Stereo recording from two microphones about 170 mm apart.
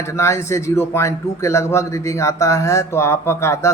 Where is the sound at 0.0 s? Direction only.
15° left (ahead or behind).